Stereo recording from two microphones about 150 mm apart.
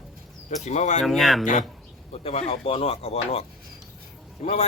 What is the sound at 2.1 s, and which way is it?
Speech, 45° left (ahead or behind).